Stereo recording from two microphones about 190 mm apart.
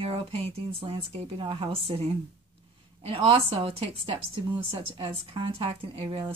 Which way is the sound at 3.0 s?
30° right (ahead or behind).